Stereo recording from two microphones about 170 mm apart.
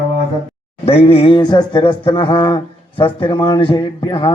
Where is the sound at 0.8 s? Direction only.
35° left (ahead or behind).